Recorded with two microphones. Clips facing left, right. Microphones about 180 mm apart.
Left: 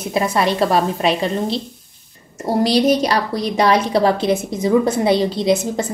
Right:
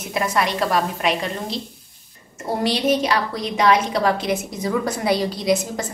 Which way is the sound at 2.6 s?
35° left (ahead or behind).